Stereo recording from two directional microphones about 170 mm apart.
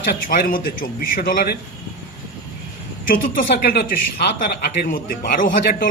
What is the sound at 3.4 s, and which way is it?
Speech, 75° left (ahead or behind).